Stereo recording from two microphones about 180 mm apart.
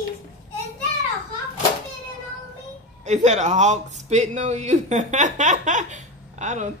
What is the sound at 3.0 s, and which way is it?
A man's voice, 40° right (ahead or behind).